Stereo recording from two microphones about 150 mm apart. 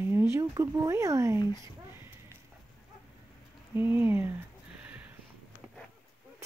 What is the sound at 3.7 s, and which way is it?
Speech, 15° right (ahead or behind).